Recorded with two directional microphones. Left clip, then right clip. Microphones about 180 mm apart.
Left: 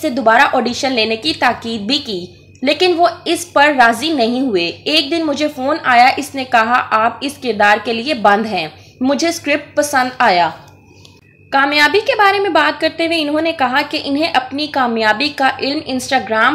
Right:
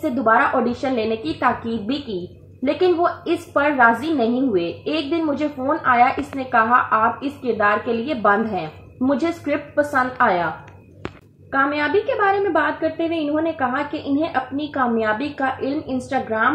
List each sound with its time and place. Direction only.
0.0 s a woman's voice: 20° left (ahead or behind)
11.5 s a woman's voice: 20° left (ahead or behind)